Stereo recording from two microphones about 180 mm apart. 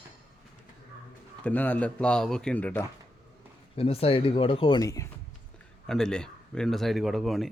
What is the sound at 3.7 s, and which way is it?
Speech, 30° left (ahead or behind).